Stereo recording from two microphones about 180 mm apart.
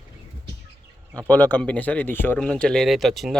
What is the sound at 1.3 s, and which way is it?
Speech, 10° left (ahead or behind).